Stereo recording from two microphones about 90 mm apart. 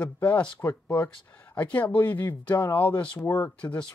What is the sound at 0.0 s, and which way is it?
Speech, 15° left (ahead or behind).